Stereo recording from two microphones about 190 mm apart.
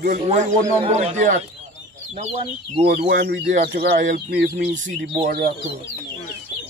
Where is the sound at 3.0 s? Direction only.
55° right (ahead or behind).